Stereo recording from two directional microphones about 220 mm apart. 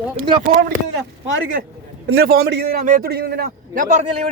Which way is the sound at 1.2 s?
60° right (ahead or behind).